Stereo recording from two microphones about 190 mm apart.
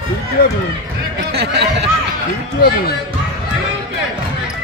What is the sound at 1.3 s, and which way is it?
Speech, 60° right (ahead or behind).